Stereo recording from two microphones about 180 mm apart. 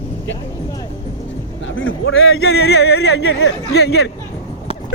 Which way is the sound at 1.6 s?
90° left.